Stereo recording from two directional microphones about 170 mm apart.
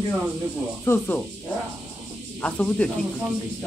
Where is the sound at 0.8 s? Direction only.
15° left (ahead or behind).